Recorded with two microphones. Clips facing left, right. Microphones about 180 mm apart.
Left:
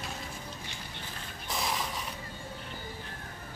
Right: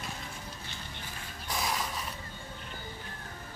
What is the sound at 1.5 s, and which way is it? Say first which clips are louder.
Mechanisms: even; centre (ahead or behind).